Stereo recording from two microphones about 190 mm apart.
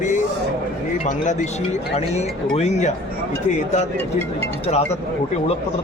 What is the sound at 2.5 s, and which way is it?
Speech, 35° left (ahead or behind).